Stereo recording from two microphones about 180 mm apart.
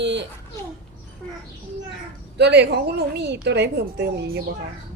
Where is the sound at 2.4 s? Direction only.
70° right (ahead or behind).